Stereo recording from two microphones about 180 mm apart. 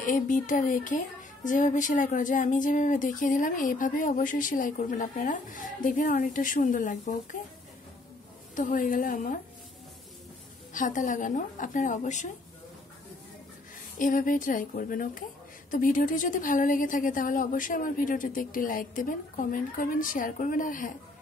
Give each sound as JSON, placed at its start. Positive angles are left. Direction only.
{"t": 0.0, "sound": "speech", "side_deg": 45}
{"t": 8.5, "sound": "speech", "side_deg": 45}
{"t": 10.7, "sound": "speech", "side_deg": 45}
{"t": 13.9, "sound": "speech", "side_deg": 50}